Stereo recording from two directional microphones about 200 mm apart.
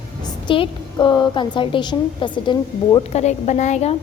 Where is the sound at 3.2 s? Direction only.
35° left (ahead or behind).